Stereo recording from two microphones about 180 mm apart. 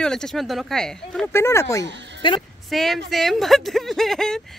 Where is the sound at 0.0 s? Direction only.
5° left (ahead or behind).